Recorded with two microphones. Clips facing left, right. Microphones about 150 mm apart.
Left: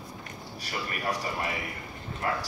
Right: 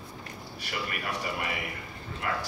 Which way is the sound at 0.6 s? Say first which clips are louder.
Left 2 dB; 40° left (ahead or behind).